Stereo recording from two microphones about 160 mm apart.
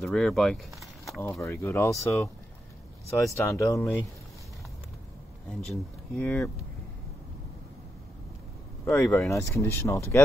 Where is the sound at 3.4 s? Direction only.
20° left (ahead or behind).